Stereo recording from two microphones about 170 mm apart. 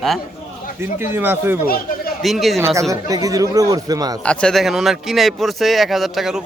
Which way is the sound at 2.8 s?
20° right (ahead or behind).